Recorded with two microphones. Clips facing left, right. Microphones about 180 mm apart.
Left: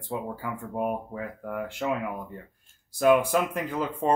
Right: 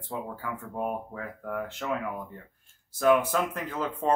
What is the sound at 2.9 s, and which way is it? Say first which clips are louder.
Speech: left 2 dB; 15° left (ahead or behind).